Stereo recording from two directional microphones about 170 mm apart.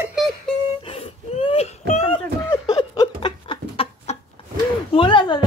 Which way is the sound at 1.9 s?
30° left (ahead or behind).